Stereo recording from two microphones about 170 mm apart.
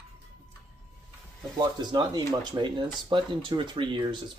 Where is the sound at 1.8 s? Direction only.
25° right (ahead or behind).